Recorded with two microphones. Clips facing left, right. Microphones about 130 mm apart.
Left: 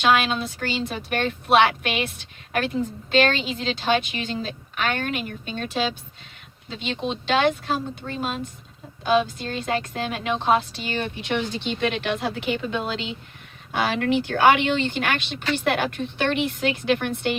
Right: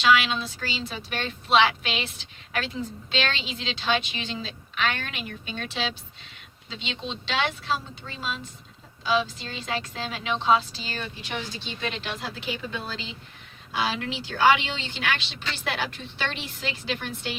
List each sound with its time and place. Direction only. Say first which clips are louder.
0.0 s a woman's voice: left 2 dB; 50° left (ahead or behind); by 13.1 s 70° left (ahead or behind)
13.7 s speech: left 7 dB; 55° left (ahead or behind)